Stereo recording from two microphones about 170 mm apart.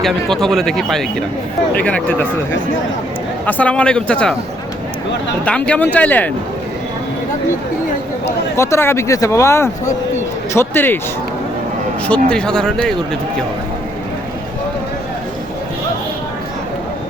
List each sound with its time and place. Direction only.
0.0 s speech: centre (ahead or behind)
3.4 s speech: 10° left (ahead or behind)
5.5 s speech: 10° left (ahead or behind)
8.5 s speech: 15° left (ahead or behind)
12.0 s speech: 5° left (ahead or behind)